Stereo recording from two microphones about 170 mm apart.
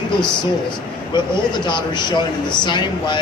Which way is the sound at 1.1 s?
25° left (ahead or behind).